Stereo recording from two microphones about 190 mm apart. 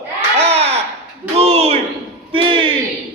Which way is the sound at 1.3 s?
35° right (ahead or behind).